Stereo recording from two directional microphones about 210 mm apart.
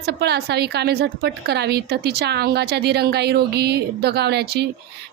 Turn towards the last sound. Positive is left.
turn(degrees=-50)  # may be behind; listen again after turning